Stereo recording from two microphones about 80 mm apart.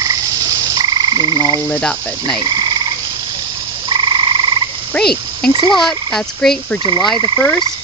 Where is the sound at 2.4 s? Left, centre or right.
Right.